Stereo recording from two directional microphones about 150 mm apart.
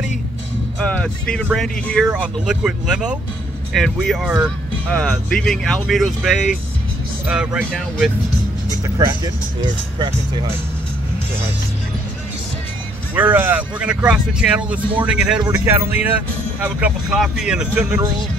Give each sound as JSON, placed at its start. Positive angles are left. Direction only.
{"t": 0.7, "sound": "speech", "side_deg": 5}
{"t": 8.8, "sound": "speech", "side_deg": -25}
{"t": 13.1, "sound": "speech", "side_deg": -10}
{"t": 15.5, "sound": "speech", "side_deg": -15}